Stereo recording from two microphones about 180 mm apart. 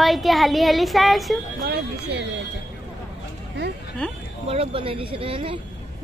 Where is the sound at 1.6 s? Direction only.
65° right (ahead or behind).